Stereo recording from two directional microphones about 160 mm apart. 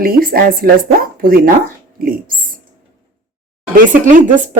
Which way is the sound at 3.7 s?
55° right (ahead or behind).